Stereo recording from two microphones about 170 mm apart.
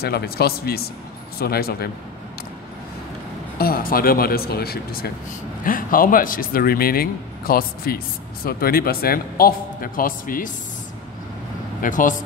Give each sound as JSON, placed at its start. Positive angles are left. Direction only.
{"t": 0.0, "sound": "speech", "side_deg": 65}
{"t": 3.5, "sound": "speech", "side_deg": 60}
{"t": 5.6, "sound": "speech", "side_deg": 55}
{"t": 11.8, "sound": "speech", "side_deg": 50}